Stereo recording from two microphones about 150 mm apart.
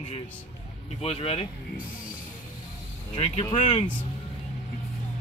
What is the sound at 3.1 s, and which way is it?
Speech, 45° left (ahead or behind).